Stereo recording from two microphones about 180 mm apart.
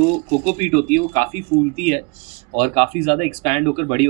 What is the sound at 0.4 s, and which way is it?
Speech, 40° right (ahead or behind).